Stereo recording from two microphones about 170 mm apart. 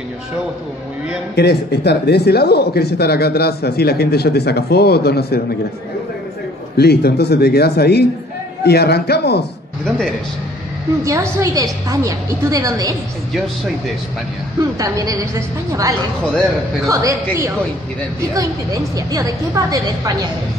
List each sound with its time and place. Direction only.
1.3 s speech: 75° left (ahead or behind)
6.8 s speech: 70° left (ahead or behind)
9.8 s speech: 5° left (ahead or behind)
11.1 s a woman's voice: 20° right (ahead or behind)
14.8 s a woman's voice: 20° right (ahead or behind)
16.8 s a woman's voice: 20° right (ahead or behind)